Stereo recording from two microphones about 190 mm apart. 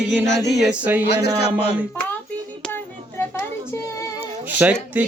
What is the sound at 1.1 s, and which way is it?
Speech, 60° left (ahead or behind).